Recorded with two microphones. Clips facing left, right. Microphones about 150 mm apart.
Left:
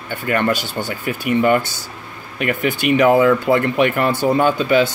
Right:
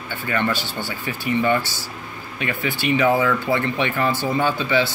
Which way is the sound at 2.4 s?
75° left (ahead or behind).